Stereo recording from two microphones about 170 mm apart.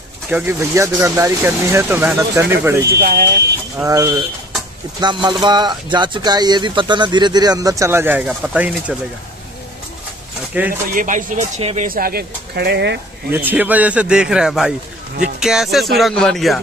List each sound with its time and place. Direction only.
0.3 s speech: 10° right (ahead or behind)
2.9 s speech: 60° right (ahead or behind)
3.8 s speech: 20° right (ahead or behind)
10.6 s speech: 10° right (ahead or behind)
10.9 s speech: 50° right (ahead or behind); by 13.0 s 80° right
13.3 s speech: 10° right (ahead or behind)